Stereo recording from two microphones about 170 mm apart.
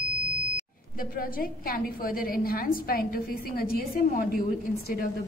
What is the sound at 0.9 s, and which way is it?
A woman's voice, 55° left (ahead or behind).